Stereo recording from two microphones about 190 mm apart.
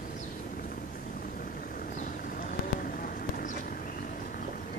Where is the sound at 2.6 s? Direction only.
45° left (ahead or behind).